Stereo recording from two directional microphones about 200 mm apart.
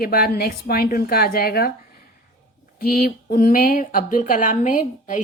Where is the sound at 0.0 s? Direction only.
50° left (ahead or behind).